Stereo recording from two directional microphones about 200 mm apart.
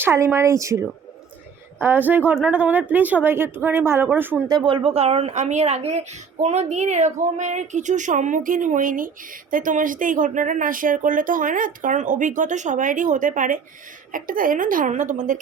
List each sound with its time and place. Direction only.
0.0 s a woman's voice: 10° right (ahead or behind); by 15.4 s 40° right (ahead or behind)